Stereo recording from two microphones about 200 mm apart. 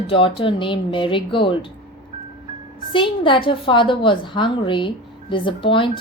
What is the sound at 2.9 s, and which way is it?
A woman's voice, 25° left (ahead or behind).